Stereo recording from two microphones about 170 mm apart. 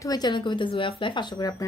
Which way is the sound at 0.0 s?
25° left (ahead or behind).